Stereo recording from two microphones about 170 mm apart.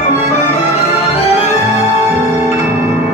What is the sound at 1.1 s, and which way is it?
Music, 35° left (ahead or behind).